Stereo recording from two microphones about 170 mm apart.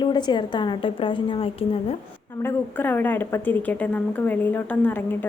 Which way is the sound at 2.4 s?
10° left (ahead or behind).